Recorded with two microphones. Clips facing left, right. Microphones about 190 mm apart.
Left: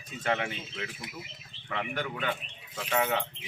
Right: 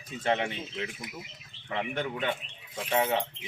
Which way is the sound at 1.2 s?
20° right (ahead or behind).